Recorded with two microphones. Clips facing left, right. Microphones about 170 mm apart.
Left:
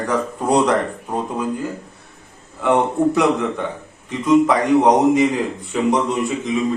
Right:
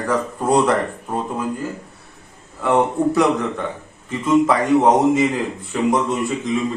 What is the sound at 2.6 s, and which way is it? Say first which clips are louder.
Speech: left 1 dB; centre (ahead or behind).